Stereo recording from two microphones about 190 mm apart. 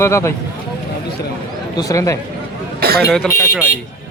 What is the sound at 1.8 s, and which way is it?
Speech, 15° left (ahead or behind).